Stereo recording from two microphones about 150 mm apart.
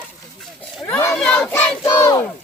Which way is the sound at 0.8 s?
15° left (ahead or behind).